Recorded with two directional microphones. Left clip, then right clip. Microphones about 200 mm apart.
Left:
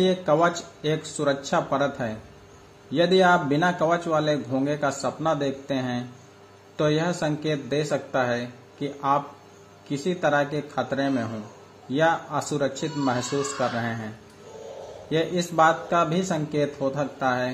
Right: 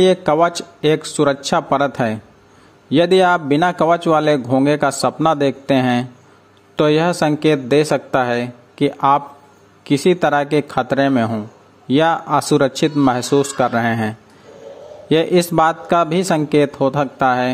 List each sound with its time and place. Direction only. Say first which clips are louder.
0.0 s a man's voice: right 8 dB; 45° right (ahead or behind)